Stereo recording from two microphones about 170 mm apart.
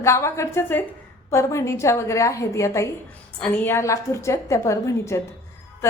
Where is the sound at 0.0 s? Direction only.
15° left (ahead or behind).